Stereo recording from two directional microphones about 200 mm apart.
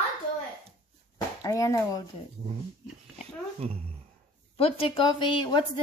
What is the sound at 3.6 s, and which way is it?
Speech, 30° right (ahead or behind).